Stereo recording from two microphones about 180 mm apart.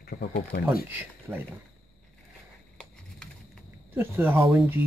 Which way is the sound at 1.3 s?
15° right (ahead or behind).